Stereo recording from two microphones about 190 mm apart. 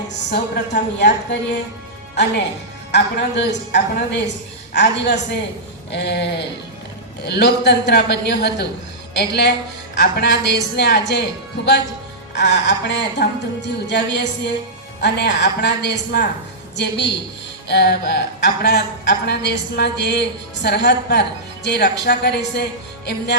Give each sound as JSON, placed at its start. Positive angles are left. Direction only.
{"t": 0.3, "sound": "a woman's voice", "side_deg": 60}
{"t": 2.9, "sound": "a woman's voice", "side_deg": 65}